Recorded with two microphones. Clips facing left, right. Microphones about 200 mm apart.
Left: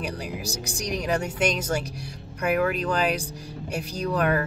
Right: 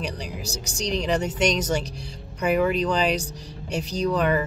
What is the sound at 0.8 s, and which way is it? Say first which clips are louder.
Speech: right 3 dB; 10° left (ahead or behind).